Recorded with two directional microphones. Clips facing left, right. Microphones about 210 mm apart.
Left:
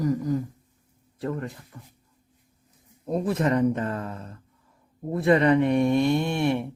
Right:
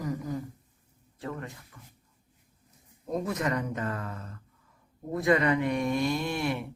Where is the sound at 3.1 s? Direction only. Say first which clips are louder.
Left 6 dB; 30° left (ahead or behind).